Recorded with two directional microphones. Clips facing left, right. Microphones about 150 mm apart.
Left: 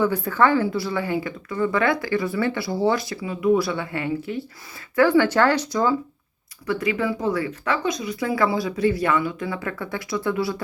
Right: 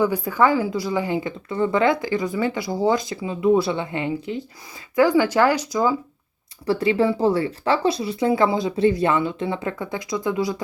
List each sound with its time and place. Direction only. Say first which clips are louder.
0.0 s speech: right 1 dB; 15° right (ahead or behind)
6.7 s speech: right 4 dB; 30° right (ahead or behind); by 10.6 s 15° right (ahead or behind)